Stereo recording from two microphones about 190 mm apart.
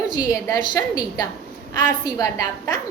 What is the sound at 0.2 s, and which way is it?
A woman's voice, 15° left (ahead or behind).